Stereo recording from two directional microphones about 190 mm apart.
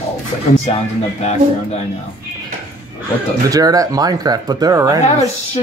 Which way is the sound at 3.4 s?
20° right (ahead or behind).